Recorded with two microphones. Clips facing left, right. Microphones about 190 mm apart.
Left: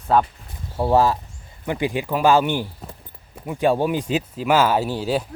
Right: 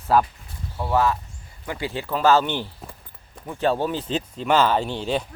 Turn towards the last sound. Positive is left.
turn(degrees=5)  # may be behind; listen again after turning